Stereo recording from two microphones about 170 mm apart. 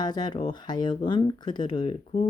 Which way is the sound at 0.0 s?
25° left (ahead or behind).